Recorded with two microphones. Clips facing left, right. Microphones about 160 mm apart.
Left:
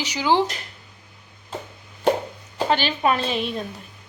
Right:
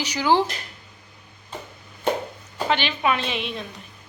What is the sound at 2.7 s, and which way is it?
Speech, 40° left (ahead or behind).